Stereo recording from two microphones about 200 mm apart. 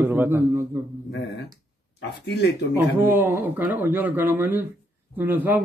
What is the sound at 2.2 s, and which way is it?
Speech, 60° left (ahead or behind).